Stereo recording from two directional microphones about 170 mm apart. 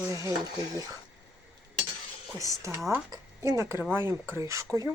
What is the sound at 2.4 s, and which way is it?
Speech, 20° right (ahead or behind).